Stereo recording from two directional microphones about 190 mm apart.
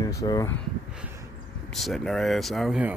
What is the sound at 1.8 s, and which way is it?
Speech, centre (ahead or behind).